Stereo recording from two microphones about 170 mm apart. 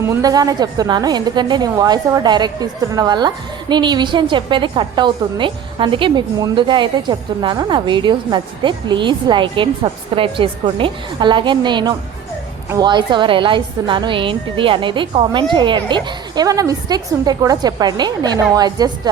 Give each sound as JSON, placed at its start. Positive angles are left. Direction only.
{"t": 0.1, "sound": "a woman's voice", "side_deg": -20}